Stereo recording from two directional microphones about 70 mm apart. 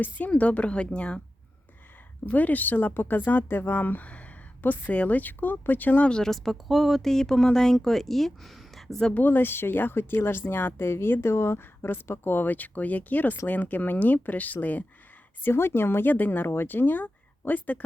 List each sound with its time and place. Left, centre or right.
0.0 s a woman's voice: left
2.2 s speech: left
6.1 s speech: centre
9.1 s speech: left
15.4 s speech: left